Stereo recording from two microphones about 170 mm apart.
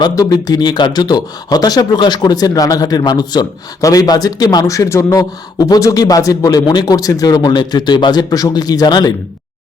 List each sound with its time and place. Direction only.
0.0 s speech: 20° left (ahead or behind)